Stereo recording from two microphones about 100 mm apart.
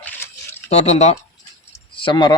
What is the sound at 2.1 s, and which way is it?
Speech, 45° left (ahead or behind).